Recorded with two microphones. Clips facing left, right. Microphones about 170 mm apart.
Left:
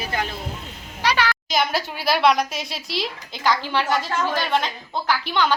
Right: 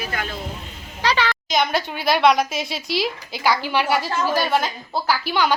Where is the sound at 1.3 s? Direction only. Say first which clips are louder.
Right 2 dB; centre (ahead or behind).